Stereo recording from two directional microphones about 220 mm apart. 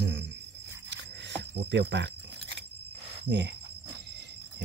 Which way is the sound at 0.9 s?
55° right (ahead or behind).